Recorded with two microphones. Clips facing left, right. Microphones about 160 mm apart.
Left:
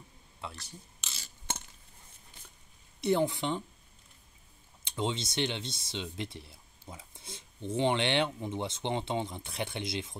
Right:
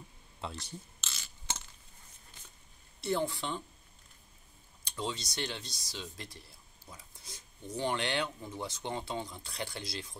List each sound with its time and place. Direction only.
0.4 s speech: 25° right (ahead or behind)
1.5 s chop: 55° left (ahead or behind)
3.0 s speech: 20° left (ahead or behind)
4.8 s speech: 25° left (ahead or behind)